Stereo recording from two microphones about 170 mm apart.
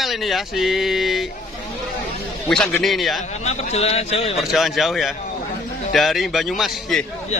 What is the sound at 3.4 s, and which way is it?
Speech, 40° left (ahead or behind).